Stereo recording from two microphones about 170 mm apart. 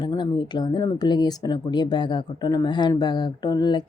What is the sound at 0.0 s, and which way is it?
A woman's voice, 25° left (ahead or behind).